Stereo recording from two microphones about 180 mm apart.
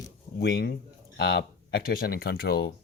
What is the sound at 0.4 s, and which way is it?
Speech, 75° left (ahead or behind).